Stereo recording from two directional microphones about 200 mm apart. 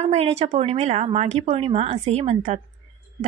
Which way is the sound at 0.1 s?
30° right (ahead or behind).